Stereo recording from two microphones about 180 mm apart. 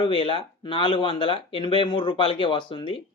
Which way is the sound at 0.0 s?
30° left (ahead or behind).